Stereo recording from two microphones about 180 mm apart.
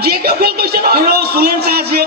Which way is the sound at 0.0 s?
60° right (ahead or behind).